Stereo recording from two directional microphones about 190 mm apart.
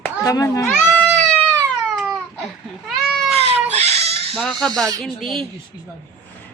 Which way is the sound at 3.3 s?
35° right (ahead or behind).